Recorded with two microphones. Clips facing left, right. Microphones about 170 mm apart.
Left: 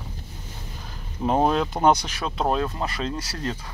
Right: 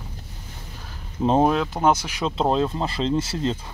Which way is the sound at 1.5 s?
Centre (ahead or behind).